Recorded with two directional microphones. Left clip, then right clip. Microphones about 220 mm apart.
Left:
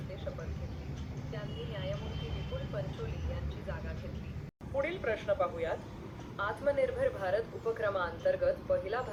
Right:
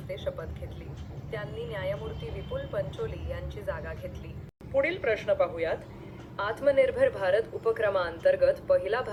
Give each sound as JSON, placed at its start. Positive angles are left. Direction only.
{"t": 1.3, "sound": "speech", "side_deg": -45}
{"t": 3.7, "sound": "speech", "side_deg": -45}